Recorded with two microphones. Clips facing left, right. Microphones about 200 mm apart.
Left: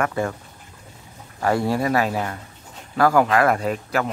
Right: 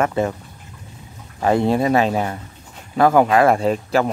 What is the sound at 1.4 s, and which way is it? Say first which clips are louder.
Speech: right 4 dB; 20° right (ahead or behind).